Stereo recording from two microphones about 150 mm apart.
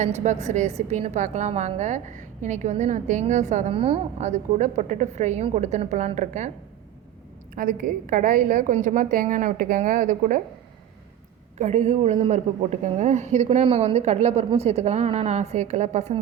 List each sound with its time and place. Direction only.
0.0 s a woman's voice: 50° right (ahead or behind)
7.5 s a woman's voice: 70° right (ahead or behind)
11.5 s a woman's voice: 50° right (ahead or behind)